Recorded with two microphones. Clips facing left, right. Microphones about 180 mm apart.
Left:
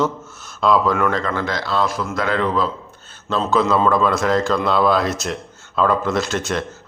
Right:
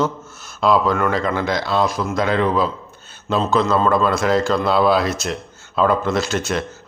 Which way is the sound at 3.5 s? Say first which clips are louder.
Left 1 dB; 5° left (ahead or behind).